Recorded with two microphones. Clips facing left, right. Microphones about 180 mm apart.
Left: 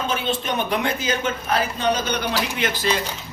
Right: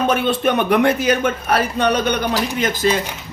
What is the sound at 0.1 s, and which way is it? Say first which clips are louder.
Speech: right 7 dB; 60° right (ahead or behind).